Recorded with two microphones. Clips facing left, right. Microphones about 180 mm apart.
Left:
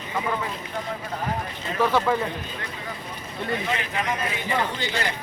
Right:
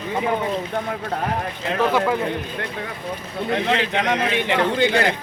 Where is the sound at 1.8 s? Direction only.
10° right (ahead or behind).